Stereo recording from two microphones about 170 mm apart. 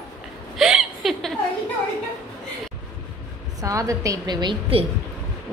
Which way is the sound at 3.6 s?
20° right (ahead or behind).